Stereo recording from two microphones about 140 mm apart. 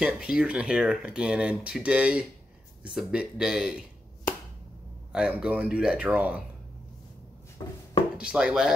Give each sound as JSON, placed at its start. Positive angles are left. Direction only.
{"t": 0.0, "sound": "speech", "side_deg": -5}
{"t": 5.1, "sound": "speech", "side_deg": -10}
{"t": 7.6, "sound": "a sound", "side_deg": 25}
{"t": 8.2, "sound": "speech", "side_deg": -5}